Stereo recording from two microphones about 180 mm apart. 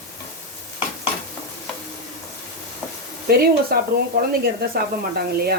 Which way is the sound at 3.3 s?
60° right (ahead or behind).